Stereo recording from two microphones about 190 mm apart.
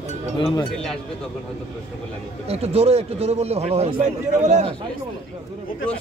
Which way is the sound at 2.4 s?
35° right (ahead or behind).